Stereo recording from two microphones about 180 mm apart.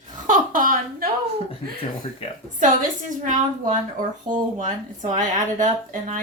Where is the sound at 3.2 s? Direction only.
45° right (ahead or behind).